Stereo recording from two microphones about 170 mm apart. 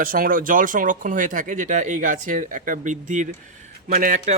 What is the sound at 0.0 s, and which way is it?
Speech, 55° right (ahead or behind).